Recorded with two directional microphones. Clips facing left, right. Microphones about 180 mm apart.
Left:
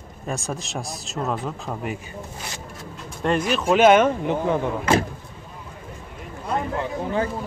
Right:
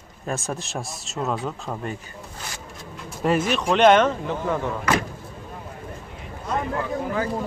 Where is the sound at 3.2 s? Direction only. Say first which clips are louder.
Even; 5° right (ahead or behind); by 5.1 s 25° left (ahead or behind).